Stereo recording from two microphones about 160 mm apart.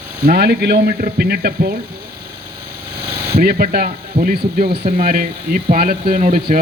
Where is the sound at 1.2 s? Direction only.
75° right (ahead or behind).